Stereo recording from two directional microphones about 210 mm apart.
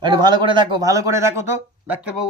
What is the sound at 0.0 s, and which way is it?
A man's voice, 20° right (ahead or behind).